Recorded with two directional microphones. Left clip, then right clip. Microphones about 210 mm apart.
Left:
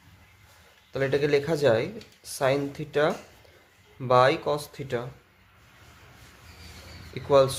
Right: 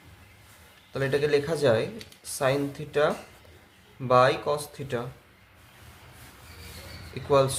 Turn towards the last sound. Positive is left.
turn(degrees=30)  # may be behind; listen again after turning